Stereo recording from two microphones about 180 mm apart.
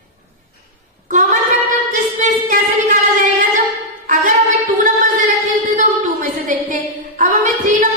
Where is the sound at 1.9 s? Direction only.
45° right (ahead or behind).